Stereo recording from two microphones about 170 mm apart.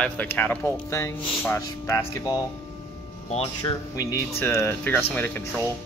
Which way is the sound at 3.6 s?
20° left (ahead or behind).